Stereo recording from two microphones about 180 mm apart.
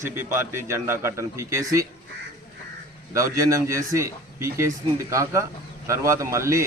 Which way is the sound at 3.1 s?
15° right (ahead or behind).